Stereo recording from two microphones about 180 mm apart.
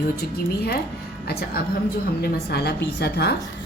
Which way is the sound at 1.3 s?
60° left (ahead or behind).